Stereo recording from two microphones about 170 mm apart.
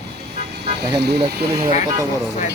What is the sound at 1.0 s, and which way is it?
Speech, 75° right (ahead or behind).